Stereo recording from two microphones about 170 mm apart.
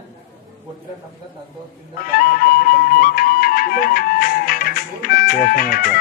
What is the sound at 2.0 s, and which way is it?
Music, 60° left (ahead or behind).